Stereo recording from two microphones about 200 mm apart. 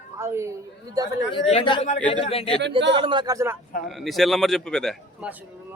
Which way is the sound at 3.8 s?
Centre (ahead or behind).